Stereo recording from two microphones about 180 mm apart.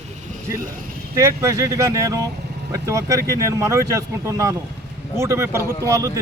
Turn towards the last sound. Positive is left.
turn(degrees=-15)  # may be behind; listen again after turning